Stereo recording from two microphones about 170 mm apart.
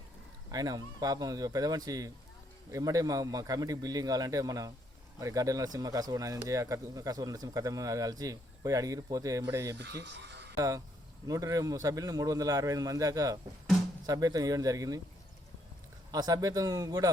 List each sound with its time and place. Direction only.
0.5 s speech: 20° right (ahead or behind)
9.7 s speech: 90° right
10.6 s speech: 20° right (ahead or behind)
16.1 s speech: 20° right (ahead or behind)